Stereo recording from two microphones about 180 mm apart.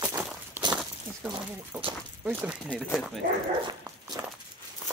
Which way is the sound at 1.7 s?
10° right (ahead or behind).